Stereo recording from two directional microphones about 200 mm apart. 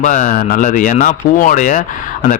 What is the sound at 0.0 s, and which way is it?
A man's voice, 40° left (ahead or behind).